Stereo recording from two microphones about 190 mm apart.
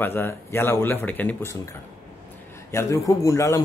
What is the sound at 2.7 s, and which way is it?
Speech, 15° left (ahead or behind).